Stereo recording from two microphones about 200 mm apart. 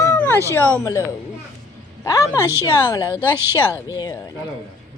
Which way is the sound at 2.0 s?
15° left (ahead or behind).